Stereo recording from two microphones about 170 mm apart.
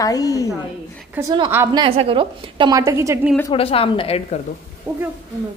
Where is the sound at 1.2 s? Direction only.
10° right (ahead or behind).